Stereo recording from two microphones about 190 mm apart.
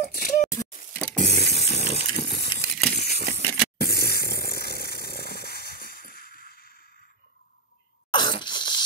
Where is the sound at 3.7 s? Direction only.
55° left (ahead or behind).